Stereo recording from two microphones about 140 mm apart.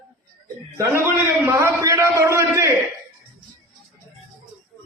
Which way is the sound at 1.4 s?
20° right (ahead or behind).